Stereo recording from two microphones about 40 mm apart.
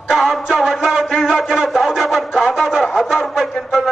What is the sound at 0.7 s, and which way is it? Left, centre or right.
Music, centre.